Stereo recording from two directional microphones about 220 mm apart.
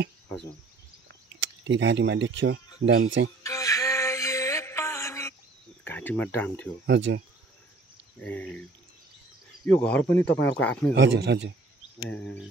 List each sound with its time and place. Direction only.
1.4 s speech: 55° right (ahead or behind)
3.4 s music: 15° left (ahead or behind)
5.9 s speech: 10° left (ahead or behind)
6.9 s speech: 55° right (ahead or behind)
8.2 s speech: 5° left (ahead or behind)
9.7 s speech: 5° left (ahead or behind)
10.2 s speech: 50° left (ahead or behind)
10.6 s speech: 5° left (ahead or behind)
11.0 s a man's voice: 50° right (ahead or behind)
12.0 s speech: 5° left (ahead or behind)